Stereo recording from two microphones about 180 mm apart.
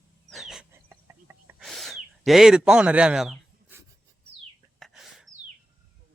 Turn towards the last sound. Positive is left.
turn(degrees=0)  # may be behind; listen again after turning